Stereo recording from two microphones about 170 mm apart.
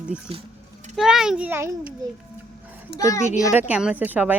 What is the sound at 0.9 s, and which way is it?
Speech, 5° right (ahead or behind).